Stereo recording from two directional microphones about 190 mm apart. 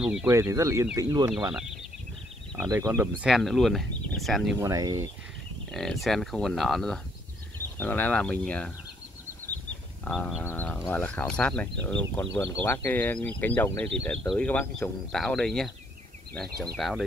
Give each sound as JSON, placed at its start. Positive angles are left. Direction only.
{"t": 0.0, "sound": "speech", "side_deg": -5}
{"t": 0.3, "sound": "speech", "side_deg": -15}
{"t": 1.5, "sound": "speech", "side_deg": 0}
{"t": 2.7, "sound": "speech", "side_deg": -15}
{"t": 4.6, "sound": "speech", "side_deg": -20}
{"t": 5.7, "sound": "speech", "side_deg": 0}
{"t": 10.0, "sound": "speech", "side_deg": 5}
{"t": 16.7, "sound": "speech", "side_deg": 0}